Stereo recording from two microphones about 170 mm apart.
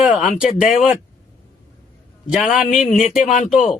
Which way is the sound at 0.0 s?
5° right (ahead or behind).